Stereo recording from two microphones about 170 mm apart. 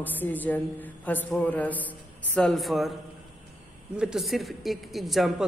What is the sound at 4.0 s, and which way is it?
A woman's voice, 5° right (ahead or behind).